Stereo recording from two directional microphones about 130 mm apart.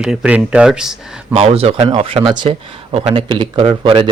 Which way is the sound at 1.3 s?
45° right (ahead or behind).